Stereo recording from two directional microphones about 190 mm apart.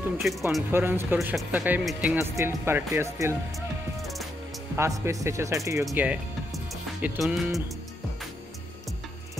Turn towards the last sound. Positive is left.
turn(degrees=0)  # may be behind; listen again after turning